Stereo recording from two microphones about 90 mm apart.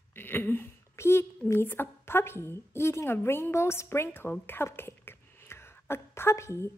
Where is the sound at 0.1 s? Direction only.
25° left (ahead or behind).